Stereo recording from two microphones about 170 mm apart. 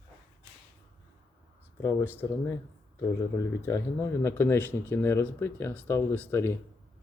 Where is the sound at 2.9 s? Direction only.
15° left (ahead or behind).